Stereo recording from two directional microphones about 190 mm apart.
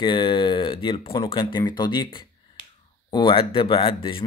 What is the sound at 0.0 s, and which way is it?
Speech, 25° left (ahead or behind).